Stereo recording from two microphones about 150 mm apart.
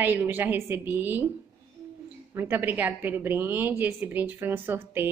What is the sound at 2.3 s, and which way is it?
A woman's voice, 15° right (ahead or behind).